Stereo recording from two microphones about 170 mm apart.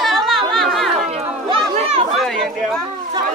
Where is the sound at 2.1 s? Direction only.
Centre (ahead or behind).